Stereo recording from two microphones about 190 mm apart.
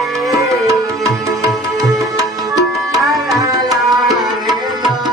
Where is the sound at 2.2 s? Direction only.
20° right (ahead or behind).